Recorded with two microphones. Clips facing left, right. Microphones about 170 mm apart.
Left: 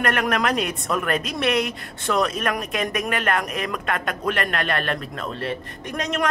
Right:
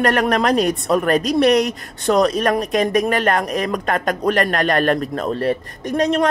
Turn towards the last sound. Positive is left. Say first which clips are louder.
# right 8 dB
turn(degrees=-35)  # may be behind; listen again after turning